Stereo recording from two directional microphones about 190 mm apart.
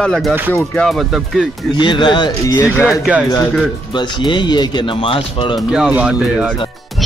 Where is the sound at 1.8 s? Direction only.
25° left (ahead or behind).